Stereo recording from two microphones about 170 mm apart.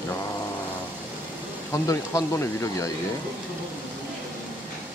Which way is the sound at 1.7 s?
20° left (ahead or behind).